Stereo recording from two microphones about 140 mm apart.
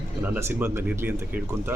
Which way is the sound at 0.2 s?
15° right (ahead or behind).